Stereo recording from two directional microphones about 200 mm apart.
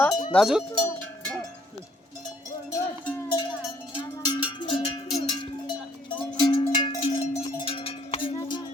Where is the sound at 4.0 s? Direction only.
25° left (ahead or behind).